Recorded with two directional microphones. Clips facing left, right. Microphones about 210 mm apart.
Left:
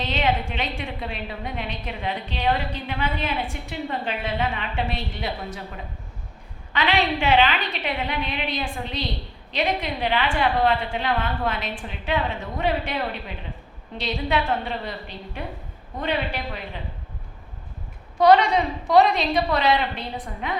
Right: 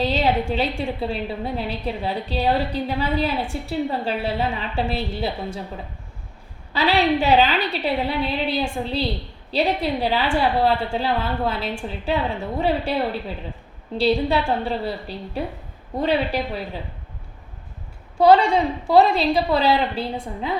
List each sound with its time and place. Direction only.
0.0 s a woman's voice: 35° right (ahead or behind)
6.7 s a woman's voice: 35° right (ahead or behind)
18.2 s a woman's voice: 30° right (ahead or behind)